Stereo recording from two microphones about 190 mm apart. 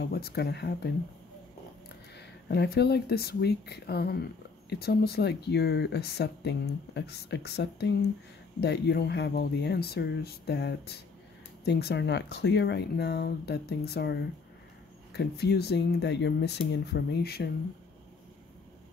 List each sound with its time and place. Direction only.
0.0 s speech: 55° left (ahead or behind)
2.1 s speech: 60° left (ahead or behind)